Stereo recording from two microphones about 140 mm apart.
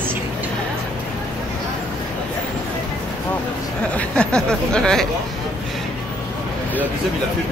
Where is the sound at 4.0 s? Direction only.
5° left (ahead or behind).